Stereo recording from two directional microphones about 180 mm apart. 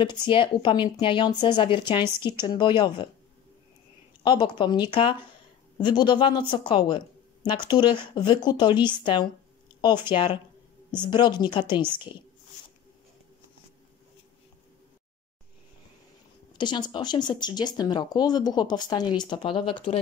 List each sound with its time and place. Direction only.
0.3 s speech: 30° left (ahead or behind)
4.2 s speech: 25° left (ahead or behind)
16.5 s speech: 25° left (ahead or behind)